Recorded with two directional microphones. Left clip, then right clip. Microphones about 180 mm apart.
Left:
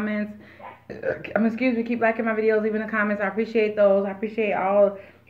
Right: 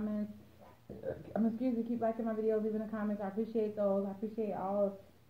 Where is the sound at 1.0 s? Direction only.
35° left (ahead or behind).